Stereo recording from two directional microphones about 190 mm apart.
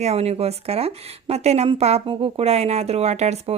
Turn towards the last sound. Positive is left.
turn(degrees=-35)  # may be behind; listen again after turning